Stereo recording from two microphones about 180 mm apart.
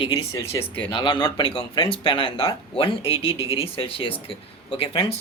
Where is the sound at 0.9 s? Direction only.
25° left (ahead or behind).